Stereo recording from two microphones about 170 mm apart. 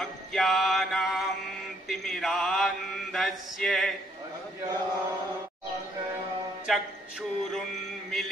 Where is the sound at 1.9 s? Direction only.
Centre (ahead or behind).